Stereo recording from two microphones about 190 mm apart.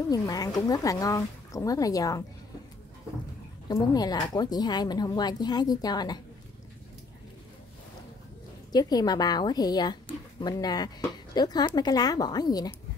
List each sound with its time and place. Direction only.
0.1 s speech: 20° left (ahead or behind)
3.6 s a woman's voice: 20° left (ahead or behind)
8.7 s a woman's voice: 20° left (ahead or behind)